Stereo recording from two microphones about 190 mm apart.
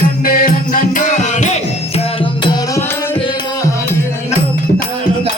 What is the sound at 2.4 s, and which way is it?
Music, 20° left (ahead or behind).